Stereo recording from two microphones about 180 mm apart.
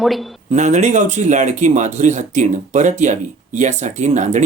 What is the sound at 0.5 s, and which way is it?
Speech, 40° right (ahead or behind).